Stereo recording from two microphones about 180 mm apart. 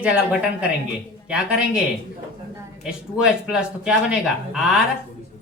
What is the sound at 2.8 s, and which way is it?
Speech, 5° right (ahead or behind).